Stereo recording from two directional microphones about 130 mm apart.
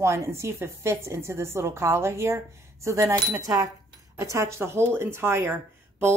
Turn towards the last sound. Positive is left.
turn(degrees=-15)  # may be behind; listen again after turning